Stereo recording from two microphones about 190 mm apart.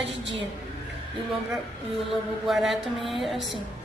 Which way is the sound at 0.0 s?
70° right (ahead or behind).